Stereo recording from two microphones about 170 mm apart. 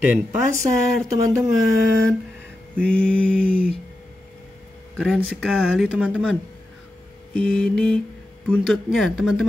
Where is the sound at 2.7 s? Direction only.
5° left (ahead or behind).